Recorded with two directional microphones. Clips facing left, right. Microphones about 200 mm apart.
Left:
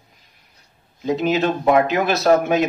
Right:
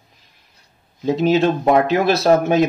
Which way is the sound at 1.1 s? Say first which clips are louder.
Right 3 dB; 35° right (ahead or behind).